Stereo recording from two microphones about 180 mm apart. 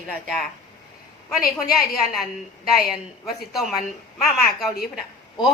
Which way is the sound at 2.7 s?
Centre (ahead or behind).